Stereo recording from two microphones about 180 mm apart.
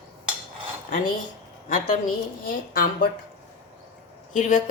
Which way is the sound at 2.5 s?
50° left (ahead or behind).